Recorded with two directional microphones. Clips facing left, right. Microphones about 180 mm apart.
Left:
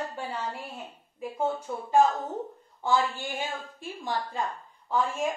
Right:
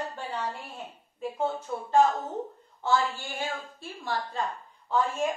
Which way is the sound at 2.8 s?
15° left (ahead or behind).